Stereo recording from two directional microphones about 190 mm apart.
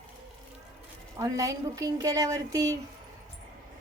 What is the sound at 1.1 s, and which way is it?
A woman's voice, 15° right (ahead or behind).